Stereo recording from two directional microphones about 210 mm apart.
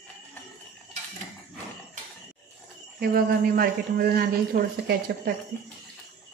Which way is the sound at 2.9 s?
45° right (ahead or behind).